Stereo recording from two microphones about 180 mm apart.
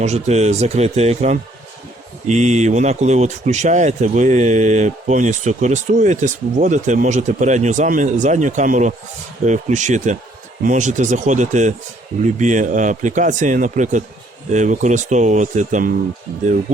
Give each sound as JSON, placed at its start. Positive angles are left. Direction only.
{"t": 0.0, "sound": "speech", "side_deg": -40}